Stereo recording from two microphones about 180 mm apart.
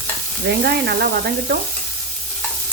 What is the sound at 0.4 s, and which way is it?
Stir, 65° right (ahead or behind).